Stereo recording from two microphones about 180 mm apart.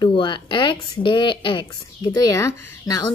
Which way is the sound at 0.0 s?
25° left (ahead or behind).